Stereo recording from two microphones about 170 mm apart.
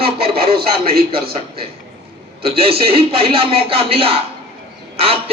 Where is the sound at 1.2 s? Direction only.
35° right (ahead or behind).